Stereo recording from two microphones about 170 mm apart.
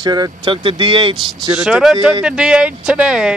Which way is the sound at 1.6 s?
5° right (ahead or behind).